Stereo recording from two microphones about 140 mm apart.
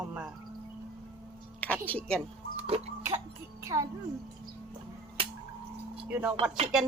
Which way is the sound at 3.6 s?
20° right (ahead or behind).